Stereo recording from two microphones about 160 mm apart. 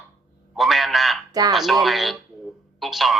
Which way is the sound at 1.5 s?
Centre (ahead or behind).